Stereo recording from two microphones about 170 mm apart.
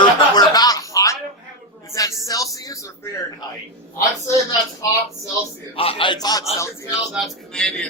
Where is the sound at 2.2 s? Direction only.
20° left (ahead or behind).